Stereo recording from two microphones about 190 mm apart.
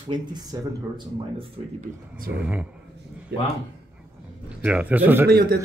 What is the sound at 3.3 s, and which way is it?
Speech, 60° right (ahead or behind).